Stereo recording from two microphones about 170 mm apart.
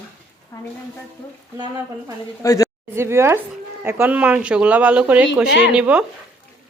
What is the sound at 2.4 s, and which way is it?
Speech, 20° left (ahead or behind).